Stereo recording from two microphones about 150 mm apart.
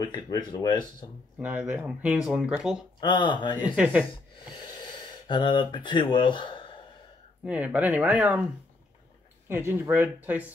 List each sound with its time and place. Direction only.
0.0 s speech: 25° left (ahead or behind)
1.4 s speech: 10° right (ahead or behind)
3.0 s speech: 30° left (ahead or behind)
3.6 s speech: 10° right (ahead or behind)
5.3 s speech: 30° left (ahead or behind)
7.4 s speech: 10° right (ahead or behind)
9.5 s speech: 15° right (ahead or behind)